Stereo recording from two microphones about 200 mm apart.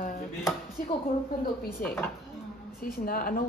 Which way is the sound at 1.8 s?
45° left (ahead or behind).